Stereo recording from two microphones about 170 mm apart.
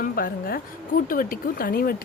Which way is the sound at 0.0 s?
60° left (ahead or behind).